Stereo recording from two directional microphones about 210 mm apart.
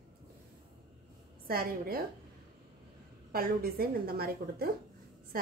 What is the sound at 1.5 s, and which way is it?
Speech, 45° right (ahead or behind).